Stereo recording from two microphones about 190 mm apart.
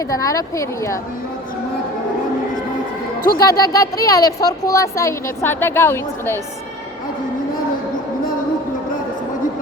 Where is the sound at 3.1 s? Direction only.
50° left (ahead or behind).